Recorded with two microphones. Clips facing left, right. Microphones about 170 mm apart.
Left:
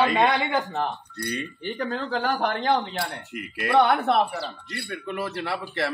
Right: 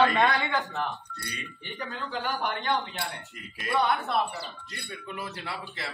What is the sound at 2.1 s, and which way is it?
Speech, 65° left (ahead or behind).